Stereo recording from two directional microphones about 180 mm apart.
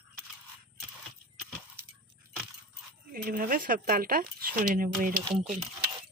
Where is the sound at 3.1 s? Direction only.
50° right (ahead or behind).